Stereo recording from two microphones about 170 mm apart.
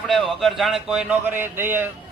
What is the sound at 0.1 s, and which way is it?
A man's voice, centre (ahead or behind).